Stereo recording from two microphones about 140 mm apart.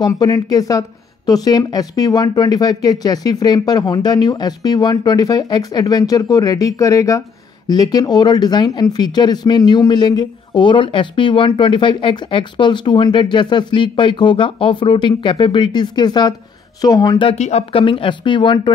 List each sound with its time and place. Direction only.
0.0 s speech: 30° left (ahead or behind)
17.4 s speech: 50° left (ahead or behind)